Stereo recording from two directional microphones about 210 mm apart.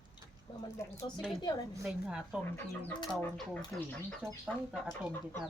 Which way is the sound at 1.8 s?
Centre (ahead or behind).